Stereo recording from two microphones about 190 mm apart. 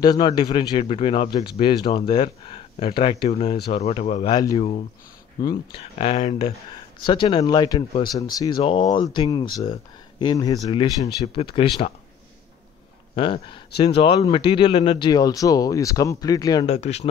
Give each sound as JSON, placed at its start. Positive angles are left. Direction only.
{"t": 0.0, "sound": "speech", "side_deg": 20}
{"t": 4.3, "sound": "speech", "side_deg": 20}
{"t": 5.8, "sound": "speech", "side_deg": 30}
{"t": 13.1, "sound": "speech", "side_deg": 25}
{"t": 16.6, "sound": "speech", "side_deg": 35}